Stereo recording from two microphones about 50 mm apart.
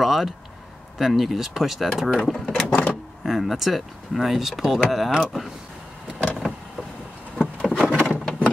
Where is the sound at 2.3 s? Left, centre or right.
Centre.